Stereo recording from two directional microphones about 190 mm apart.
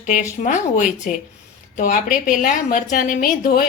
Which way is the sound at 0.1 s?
40° left (ahead or behind).